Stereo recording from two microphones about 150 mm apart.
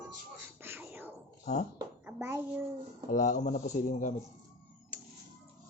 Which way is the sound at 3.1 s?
60° left (ahead or behind).